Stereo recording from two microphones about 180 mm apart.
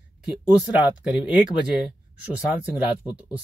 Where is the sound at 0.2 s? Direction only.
5° right (ahead or behind).